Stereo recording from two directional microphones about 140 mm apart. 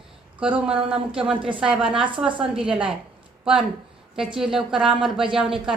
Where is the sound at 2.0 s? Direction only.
35° right (ahead or behind).